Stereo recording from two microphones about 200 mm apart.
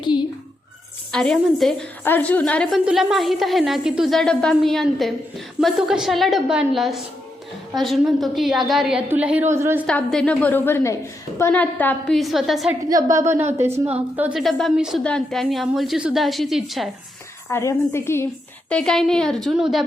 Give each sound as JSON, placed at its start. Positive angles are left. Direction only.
{"t": 0.0, "sound": "a sound", "side_deg": 20}
{"t": 1.1, "sound": "a woman's voice", "side_deg": 5}
{"t": 9.8, "sound": "a woman's voice", "side_deg": 5}
{"t": 12.9, "sound": "speech", "side_deg": -15}
{"t": 14.2, "sound": "a woman's voice", "side_deg": -5}
{"t": 17.5, "sound": "a woman's voice", "side_deg": 15}